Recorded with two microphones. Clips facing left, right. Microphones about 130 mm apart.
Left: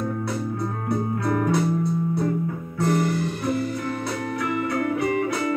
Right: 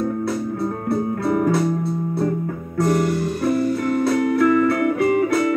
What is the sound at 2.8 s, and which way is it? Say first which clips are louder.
Guitar: right 4 dB; 45° right (ahead or behind).